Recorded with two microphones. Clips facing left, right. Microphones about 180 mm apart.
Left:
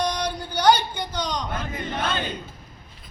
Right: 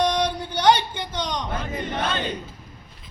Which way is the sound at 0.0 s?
25° right (ahead or behind).